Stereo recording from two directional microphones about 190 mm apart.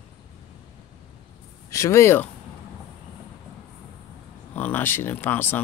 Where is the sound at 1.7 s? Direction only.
15° left (ahead or behind).